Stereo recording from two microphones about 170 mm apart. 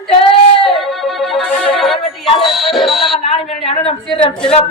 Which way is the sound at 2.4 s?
Centre (ahead or behind).